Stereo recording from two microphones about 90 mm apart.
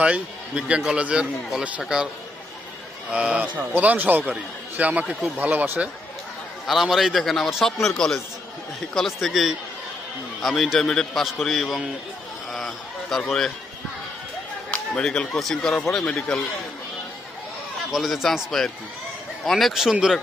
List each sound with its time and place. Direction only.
0.0 s a man's voice: 10° right (ahead or behind)
3.1 s a man's voice: 10° right (ahead or behind)
6.7 s a man's voice: centre (ahead or behind)
12.5 s a sound: centre (ahead or behind)
13.2 s a man's voice: 5° left (ahead or behind)
14.7 s speech: 10° left (ahead or behind)
17.9 s a man's voice: centre (ahead or behind)